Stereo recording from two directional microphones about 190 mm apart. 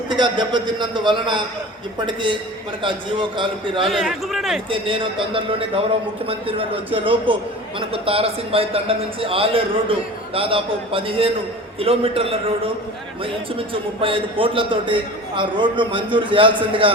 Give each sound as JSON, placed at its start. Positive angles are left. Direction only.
{"t": 0.1, "sound": "a man's voice", "side_deg": -25}
{"t": 3.8, "sound": "speech", "side_deg": 0}
{"t": 4.7, "sound": "a man's voice", "side_deg": -25}
{"t": 13.6, "sound": "a man's voice", "side_deg": -30}